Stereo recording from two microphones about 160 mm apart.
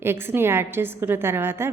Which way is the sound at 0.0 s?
15° right (ahead or behind).